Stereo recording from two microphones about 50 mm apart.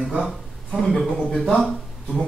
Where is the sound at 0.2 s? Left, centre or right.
Centre.